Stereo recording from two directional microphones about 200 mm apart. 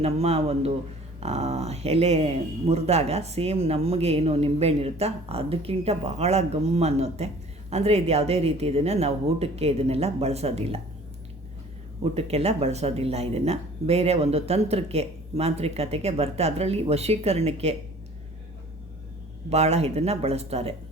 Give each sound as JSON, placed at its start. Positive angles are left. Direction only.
{"t": 0.0, "sound": "speech", "side_deg": -30}
{"t": 12.1, "sound": "speech", "side_deg": -30}
{"t": 19.5, "sound": "speech", "side_deg": -30}